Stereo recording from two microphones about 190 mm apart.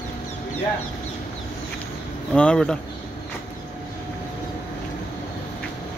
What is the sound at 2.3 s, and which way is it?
Speech, 5° left (ahead or behind).